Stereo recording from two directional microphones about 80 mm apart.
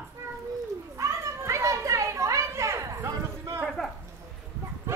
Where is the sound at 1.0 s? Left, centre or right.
Right.